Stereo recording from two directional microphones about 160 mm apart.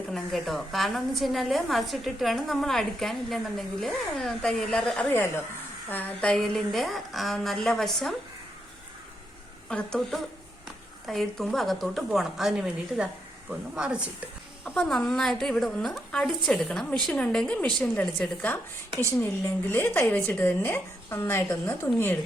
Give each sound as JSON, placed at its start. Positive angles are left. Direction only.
{"t": 0.1, "sound": "a woman's voice", "side_deg": 0}
{"t": 9.6, "sound": "a woman's voice", "side_deg": 5}
{"t": 14.6, "sound": "a woman's voice", "side_deg": 5}